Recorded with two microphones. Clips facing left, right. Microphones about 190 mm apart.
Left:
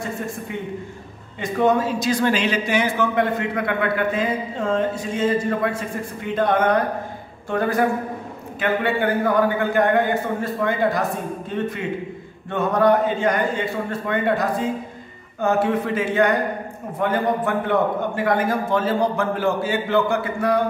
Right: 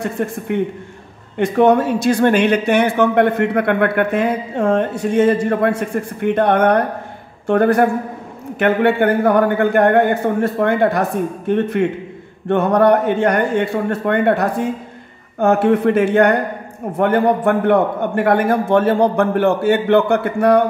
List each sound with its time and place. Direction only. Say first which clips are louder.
0.0 s a man's voice: right 6 dB; 65° right (ahead or behind)